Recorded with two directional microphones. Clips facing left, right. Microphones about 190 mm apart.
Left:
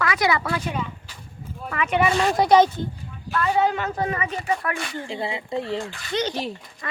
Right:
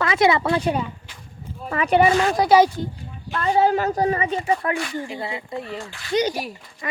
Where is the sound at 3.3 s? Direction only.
35° right (ahead or behind).